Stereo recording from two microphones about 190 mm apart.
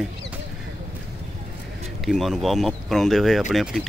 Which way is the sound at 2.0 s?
Centre (ahead or behind).